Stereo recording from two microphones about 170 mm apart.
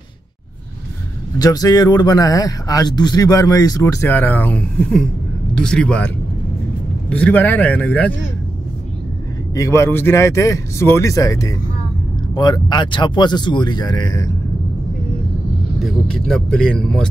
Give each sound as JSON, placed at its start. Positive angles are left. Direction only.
{"t": 1.4, "sound": "a man's voice", "side_deg": 20}
{"t": 9.5, "sound": "a man's voice", "side_deg": 15}
{"t": 15.8, "sound": "speech", "side_deg": 0}